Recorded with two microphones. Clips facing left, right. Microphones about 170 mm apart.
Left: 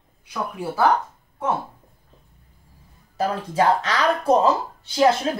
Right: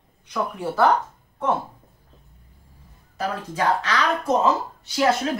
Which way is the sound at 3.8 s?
35° left (ahead or behind).